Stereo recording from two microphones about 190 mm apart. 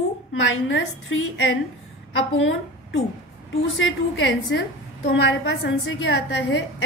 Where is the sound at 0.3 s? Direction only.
80° left.